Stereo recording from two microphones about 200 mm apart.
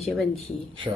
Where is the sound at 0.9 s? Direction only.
10° right (ahead or behind).